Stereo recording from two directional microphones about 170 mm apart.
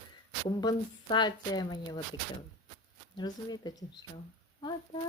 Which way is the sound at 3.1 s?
25° left (ahead or behind).